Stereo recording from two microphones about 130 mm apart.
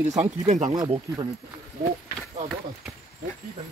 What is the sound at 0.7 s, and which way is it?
Speech, 35° right (ahead or behind).